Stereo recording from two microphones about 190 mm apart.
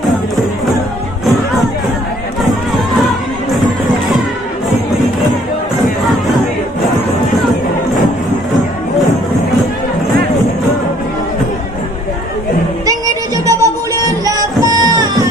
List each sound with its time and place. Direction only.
12.8 s music: 15° right (ahead or behind)